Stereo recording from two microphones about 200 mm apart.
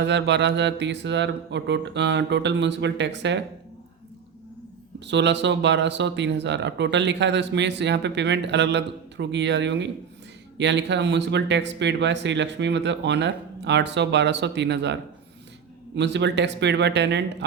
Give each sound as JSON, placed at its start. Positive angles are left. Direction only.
{"t": 0.0, "sound": "speech", "side_deg": -60}
{"t": 4.9, "sound": "speech", "side_deg": -60}
{"t": 16.0, "sound": "speech", "side_deg": -60}